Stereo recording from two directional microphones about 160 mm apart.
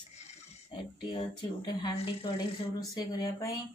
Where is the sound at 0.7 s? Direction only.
35° left (ahead or behind).